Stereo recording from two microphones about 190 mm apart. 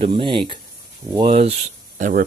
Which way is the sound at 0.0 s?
25° right (ahead or behind).